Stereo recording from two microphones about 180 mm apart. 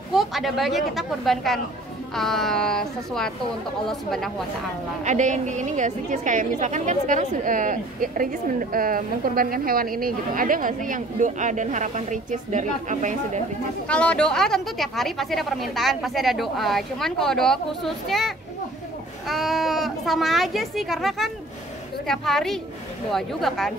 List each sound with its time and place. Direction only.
0.1 s speech: centre (ahead or behind)
5.0 s a woman's voice: 40° right (ahead or behind)
13.8 s speech: 5° left (ahead or behind)